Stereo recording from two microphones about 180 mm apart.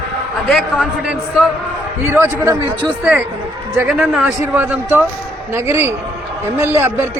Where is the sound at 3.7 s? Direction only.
10° right (ahead or behind).